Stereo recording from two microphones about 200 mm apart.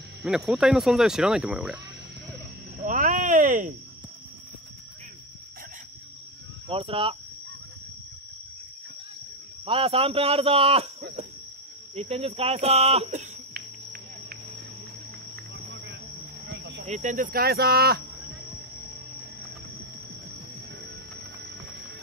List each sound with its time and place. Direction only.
0.2 s speech: centre (ahead or behind)
2.8 s a sound: 40° right (ahead or behind)
6.7 s speech: 25° right (ahead or behind)
9.7 s speech: 30° right (ahead or behind)
11.9 s speech: 30° right (ahead or behind)
15.5 s cricket: 60° right (ahead or behind)
16.8 s speech: 35° right (ahead or behind)